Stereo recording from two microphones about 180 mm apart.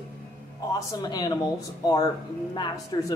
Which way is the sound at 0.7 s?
20° left (ahead or behind).